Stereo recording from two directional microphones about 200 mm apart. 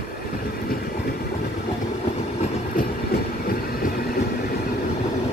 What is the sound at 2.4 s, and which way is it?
Train, 45° left (ahead or behind).